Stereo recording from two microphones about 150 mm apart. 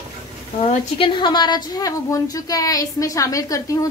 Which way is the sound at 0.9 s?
35° left (ahead or behind).